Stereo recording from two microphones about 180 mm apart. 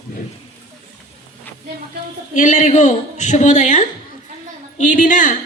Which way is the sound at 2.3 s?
45° left (ahead or behind).